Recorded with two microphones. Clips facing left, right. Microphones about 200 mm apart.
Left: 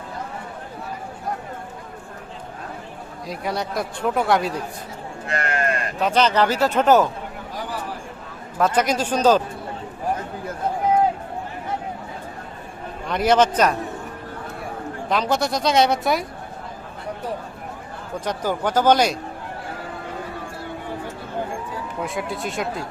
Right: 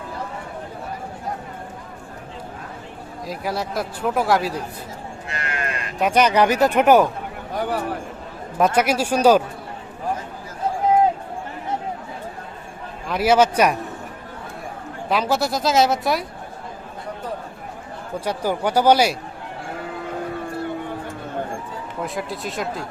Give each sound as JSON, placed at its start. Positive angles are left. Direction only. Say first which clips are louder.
{"t": 3.2, "sound": "speech", "louder": "even", "side_deg": 0}
{"t": 5.3, "sound": "sheep", "louder": "left 6 dB", "side_deg": 45}
{"t": 6.0, "sound": "speech", "louder": "right 2 dB", "side_deg": -15}
{"t": 7.5, "sound": "a sound", "louder": "right 8 dB", "side_deg": -55}
{"t": 8.5, "sound": "speech", "louder": "right 2 dB", "side_deg": -15}
{"t": 13.1, "sound": "speech", "louder": "right 1 dB", "side_deg": -5}
{"t": 15.1, "sound": "speech", "louder": "right 1 dB", "side_deg": -5}
{"t": 18.3, "sound": "speech", "louder": "right 1 dB", "side_deg": -10}
{"t": 22.0, "sound": "speech", "louder": "even", "side_deg": 0}